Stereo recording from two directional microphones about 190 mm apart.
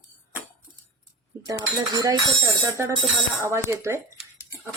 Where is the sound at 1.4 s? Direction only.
15° right (ahead or behind).